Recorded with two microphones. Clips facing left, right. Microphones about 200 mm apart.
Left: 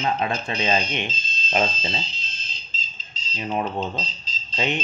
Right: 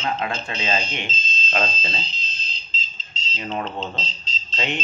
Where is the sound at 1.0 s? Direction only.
20° right (ahead or behind).